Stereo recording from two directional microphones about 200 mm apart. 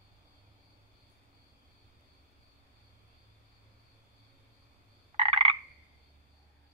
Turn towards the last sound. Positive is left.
turn(degrees=-30)  # may be behind; listen again after turning